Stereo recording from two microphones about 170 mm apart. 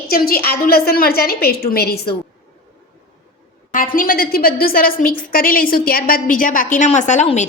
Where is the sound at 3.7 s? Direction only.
55° left (ahead or behind).